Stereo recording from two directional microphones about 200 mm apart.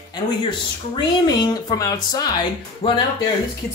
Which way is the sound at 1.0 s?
20° left (ahead or behind).